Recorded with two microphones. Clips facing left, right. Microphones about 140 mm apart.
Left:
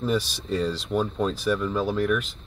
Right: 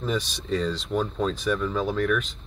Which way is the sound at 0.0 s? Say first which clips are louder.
Left 3 dB; 5° left (ahead or behind).